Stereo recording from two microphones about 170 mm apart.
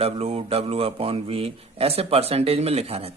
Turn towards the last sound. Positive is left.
turn(degrees=-35)  # may be behind; listen again after turning